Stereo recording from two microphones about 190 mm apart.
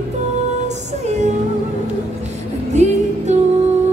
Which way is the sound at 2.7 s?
35° right (ahead or behind).